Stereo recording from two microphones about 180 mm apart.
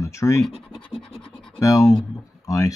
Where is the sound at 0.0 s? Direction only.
15° left (ahead or behind).